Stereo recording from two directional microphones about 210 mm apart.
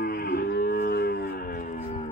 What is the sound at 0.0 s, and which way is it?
Livestock, 45° left (ahead or behind).